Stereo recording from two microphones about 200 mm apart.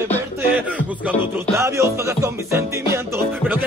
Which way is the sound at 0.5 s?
10° right (ahead or behind).